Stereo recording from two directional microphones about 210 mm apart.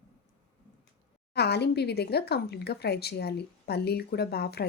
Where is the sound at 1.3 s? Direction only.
50° left (ahead or behind).